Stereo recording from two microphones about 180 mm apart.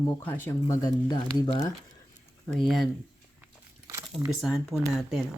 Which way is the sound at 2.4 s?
Centre (ahead or behind).